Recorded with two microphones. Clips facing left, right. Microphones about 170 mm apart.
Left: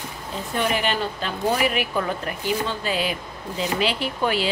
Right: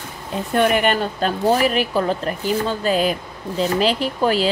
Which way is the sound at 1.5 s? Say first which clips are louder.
Right 4 dB; 35° right (ahead or behind).